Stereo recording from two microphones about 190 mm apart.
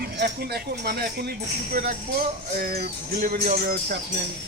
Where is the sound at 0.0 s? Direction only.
55° right (ahead or behind).